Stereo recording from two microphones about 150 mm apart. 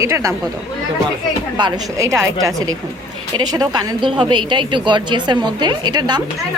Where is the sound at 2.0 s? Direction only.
20° right (ahead or behind).